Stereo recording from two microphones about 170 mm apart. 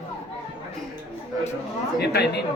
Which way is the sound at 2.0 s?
75° left (ahead or behind).